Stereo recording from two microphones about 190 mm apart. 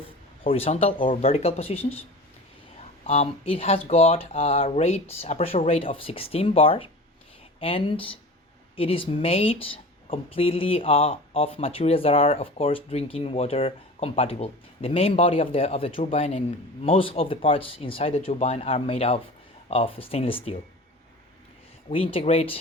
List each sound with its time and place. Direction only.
0.4 s speech: 30° left (ahead or behind)
3.1 s speech: 30° left (ahead or behind)
21.8 s speech: 30° left (ahead or behind)